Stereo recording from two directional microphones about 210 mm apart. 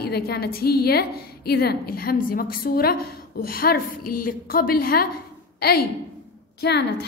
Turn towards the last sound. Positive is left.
turn(degrees=50)  # may be behind; listen again after turning